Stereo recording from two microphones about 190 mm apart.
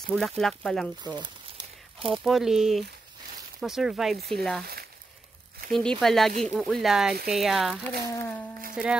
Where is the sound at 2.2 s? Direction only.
Centre (ahead or behind).